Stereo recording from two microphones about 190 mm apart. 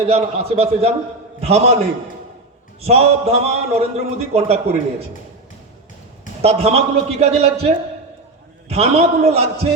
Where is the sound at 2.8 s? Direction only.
35° right (ahead or behind).